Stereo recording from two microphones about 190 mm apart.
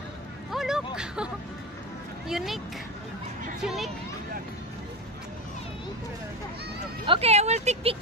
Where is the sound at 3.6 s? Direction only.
Centre (ahead or behind).